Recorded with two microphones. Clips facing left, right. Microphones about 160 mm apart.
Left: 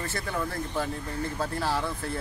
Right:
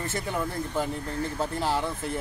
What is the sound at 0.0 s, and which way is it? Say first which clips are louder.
Speech: right 2 dB; 20° right (ahead or behind).